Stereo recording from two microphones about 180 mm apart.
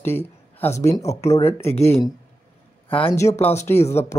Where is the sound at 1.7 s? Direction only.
35° left (ahead or behind).